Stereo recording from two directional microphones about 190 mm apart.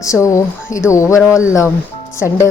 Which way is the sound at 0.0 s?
15° left (ahead or behind).